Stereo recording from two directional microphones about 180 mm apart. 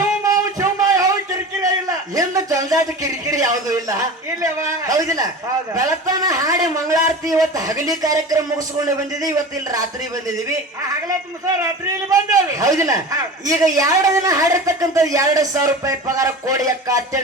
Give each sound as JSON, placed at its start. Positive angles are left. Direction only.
{"t": 0.3, "sound": "a sound", "side_deg": -20}
{"t": 1.6, "sound": "a man's voice", "side_deg": -20}
{"t": 12.1, "sound": "a man's voice", "side_deg": -20}